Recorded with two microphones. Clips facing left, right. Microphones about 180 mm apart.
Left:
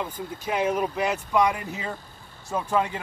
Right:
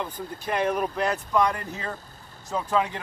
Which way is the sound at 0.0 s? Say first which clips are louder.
Left 1 dB; 10° left (ahead or behind).